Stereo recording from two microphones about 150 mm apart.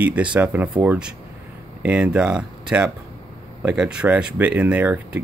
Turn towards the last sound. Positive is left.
turn(degrees=-10)  # may be behind; listen again after turning